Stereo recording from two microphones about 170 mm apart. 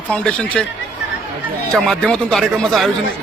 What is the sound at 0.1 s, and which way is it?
Speech, 5° left (ahead or behind).